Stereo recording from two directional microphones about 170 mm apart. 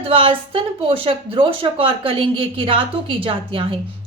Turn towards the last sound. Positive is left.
turn(degrees=-30)  # may be behind; listen again after turning